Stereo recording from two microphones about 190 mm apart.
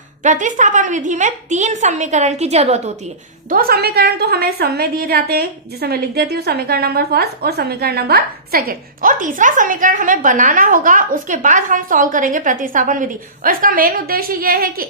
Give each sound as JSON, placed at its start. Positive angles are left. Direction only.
{"t": 0.2, "sound": "a woman's voice", "side_deg": -40}
{"t": 3.5, "sound": "a woman's voice", "side_deg": -50}